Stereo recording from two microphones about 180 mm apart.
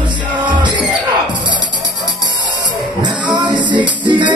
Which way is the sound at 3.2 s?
25° right (ahead or behind).